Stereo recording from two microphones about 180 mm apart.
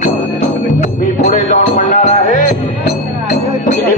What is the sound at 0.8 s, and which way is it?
Music, 40° left (ahead or behind).